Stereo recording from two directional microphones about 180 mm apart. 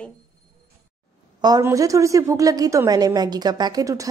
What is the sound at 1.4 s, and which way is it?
A woman's voice, 20° right (ahead or behind).